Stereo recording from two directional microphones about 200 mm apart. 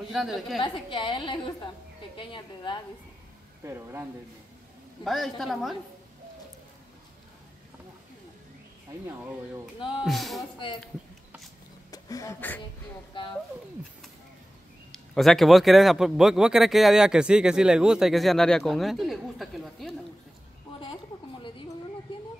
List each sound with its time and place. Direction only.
0.1 s a man's voice: centre (ahead or behind)
0.6 s a woman's voice: 25° left (ahead or behind)
3.6 s speech: 10° right (ahead or behind)
5.0 s a man's voice: centre (ahead or behind)
9.9 s a man's voice: centre (ahead or behind)
11.9 s a sound: 15° left (ahead or behind)
14.9 s a man's voice: centre (ahead or behind)
20.8 s a sound: 25° left (ahead or behind)